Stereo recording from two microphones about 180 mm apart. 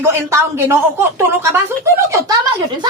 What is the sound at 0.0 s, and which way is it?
Speech, 15° right (ahead or behind).